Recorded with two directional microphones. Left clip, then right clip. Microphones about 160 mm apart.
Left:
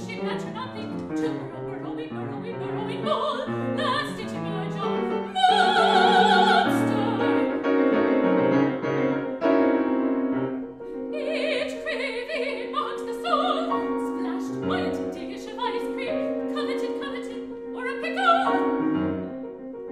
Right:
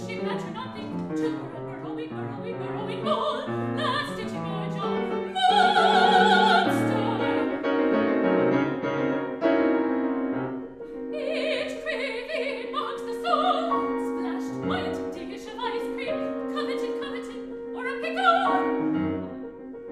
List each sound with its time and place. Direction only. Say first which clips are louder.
3.1 s opera: even; 5° left (ahead or behind)
4.8 s music: left 1 dB; 5° left (ahead or behind)
11.1 s opera: left 1 dB; 5° left (ahead or behind)
15.6 s music: left 2 dB; 5° left (ahead or behind)
17.8 s music: left 1 dB; 5° left (ahead or behind)